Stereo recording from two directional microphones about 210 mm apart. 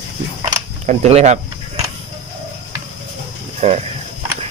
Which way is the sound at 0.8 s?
30° right (ahead or behind).